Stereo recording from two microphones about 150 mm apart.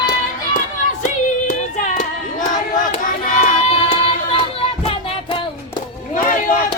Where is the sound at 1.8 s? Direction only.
55° left (ahead or behind).